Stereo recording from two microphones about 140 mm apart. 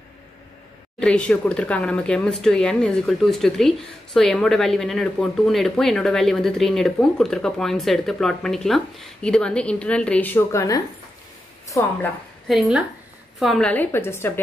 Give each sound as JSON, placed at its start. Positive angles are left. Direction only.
{"t": 0.9, "sound": "a woman's voice", "side_deg": 5}
{"t": 12.4, "sound": "a woman's voice", "side_deg": -5}